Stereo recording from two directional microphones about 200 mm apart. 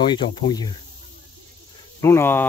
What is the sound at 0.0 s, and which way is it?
Speech, 25° left (ahead or behind).